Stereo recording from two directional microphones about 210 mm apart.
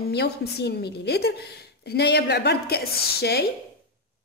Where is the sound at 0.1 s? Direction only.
50° left (ahead or behind).